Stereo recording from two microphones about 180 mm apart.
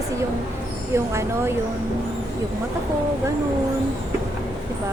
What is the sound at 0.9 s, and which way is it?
Speech, 15° right (ahead or behind).